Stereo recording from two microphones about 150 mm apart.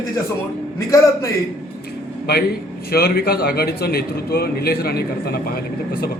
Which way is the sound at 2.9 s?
90° left.